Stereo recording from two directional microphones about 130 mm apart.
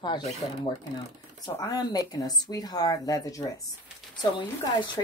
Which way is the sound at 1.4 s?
30° left (ahead or behind).